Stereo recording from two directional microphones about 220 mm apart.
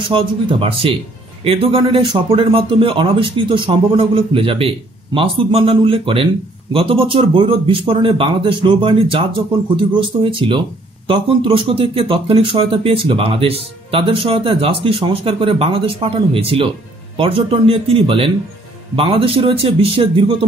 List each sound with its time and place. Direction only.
0.1 s speech: 25° right (ahead or behind)